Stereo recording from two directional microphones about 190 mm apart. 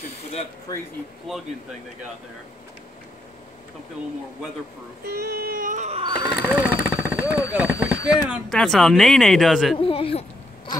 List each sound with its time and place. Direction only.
0.7 s speech: 20° left (ahead or behind)
5.0 s a sound: 55° right (ahead or behind); by 6.3 s 25° right (ahead or behind)
6.5 s vehicle: 10° right (ahead or behind)
7.5 s speech: 5° right (ahead or behind)
9.8 s speech: 30° left (ahead or behind)